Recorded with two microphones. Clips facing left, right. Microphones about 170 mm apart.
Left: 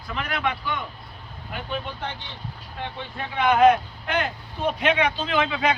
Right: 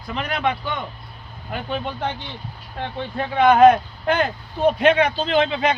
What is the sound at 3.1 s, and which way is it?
A man's voice, 35° right (ahead or behind).